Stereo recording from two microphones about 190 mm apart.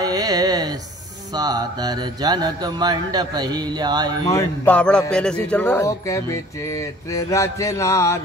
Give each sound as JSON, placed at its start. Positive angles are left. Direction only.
{"t": 0.0, "sound": "a sound", "side_deg": -20}
{"t": 1.3, "sound": "speech", "side_deg": -20}
{"t": 4.3, "sound": "speech", "side_deg": 10}